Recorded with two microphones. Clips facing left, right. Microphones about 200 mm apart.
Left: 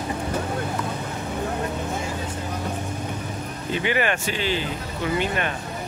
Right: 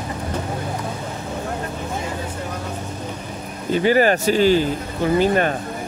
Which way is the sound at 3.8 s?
40° right (ahead or behind).